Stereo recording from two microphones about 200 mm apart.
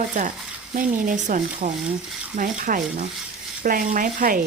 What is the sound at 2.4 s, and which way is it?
Sanding, 45° right (ahead or behind).